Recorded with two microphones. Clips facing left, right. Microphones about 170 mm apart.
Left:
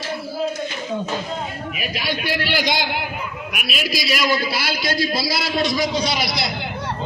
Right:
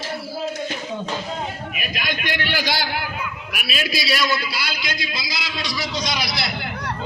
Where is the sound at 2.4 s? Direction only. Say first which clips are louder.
Left 1 dB; 10° left (ahead or behind).